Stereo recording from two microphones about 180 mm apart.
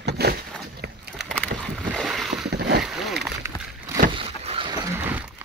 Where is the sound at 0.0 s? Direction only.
65° right (ahead or behind).